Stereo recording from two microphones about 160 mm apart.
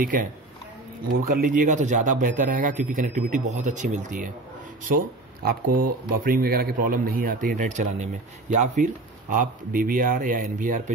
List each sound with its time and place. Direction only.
0.0 s a man's voice: 60° right (ahead or behind)
1.3 s speech: 55° right (ahead or behind)
4.8 s a man's voice: 65° right (ahead or behind)